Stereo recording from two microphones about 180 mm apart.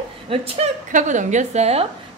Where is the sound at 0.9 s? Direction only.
45° right (ahead or behind).